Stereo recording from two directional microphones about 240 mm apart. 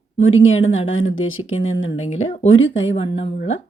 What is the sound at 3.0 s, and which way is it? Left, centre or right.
Speech, left.